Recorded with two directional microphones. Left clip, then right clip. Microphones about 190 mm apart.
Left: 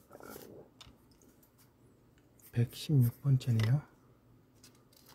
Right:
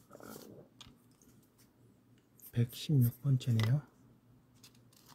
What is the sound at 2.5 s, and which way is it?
Speech, centre (ahead or behind).